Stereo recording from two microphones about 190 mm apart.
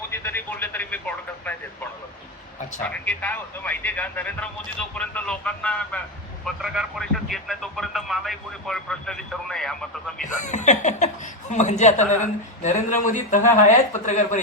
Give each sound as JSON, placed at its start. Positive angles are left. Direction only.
{"t": 0.1, "sound": "speech", "side_deg": 10}
{"t": 2.8, "sound": "speech", "side_deg": 5}
{"t": 10.2, "sound": "speech", "side_deg": 40}